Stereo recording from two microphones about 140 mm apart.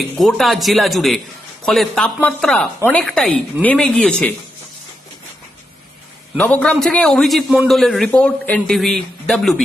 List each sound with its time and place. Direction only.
0.2 s speech: centre (ahead or behind)
6.3 s a man's voice: 10° left (ahead or behind)